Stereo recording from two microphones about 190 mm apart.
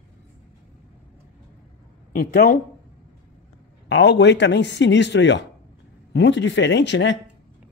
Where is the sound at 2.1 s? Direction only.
55° left (ahead or behind).